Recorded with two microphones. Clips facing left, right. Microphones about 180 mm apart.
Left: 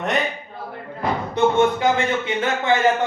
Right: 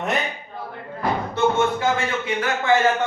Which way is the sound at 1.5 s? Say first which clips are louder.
Left 3 dB; 20° left (ahead or behind).